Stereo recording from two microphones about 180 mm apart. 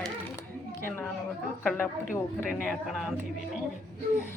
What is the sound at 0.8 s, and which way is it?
A woman's voice, 10° left (ahead or behind).